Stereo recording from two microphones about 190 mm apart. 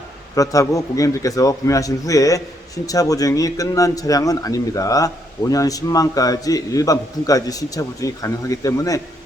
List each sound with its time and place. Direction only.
0.3 s a man's voice: 15° left (ahead or behind)